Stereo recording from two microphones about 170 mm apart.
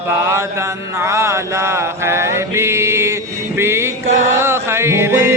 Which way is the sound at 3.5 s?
15° right (ahead or behind).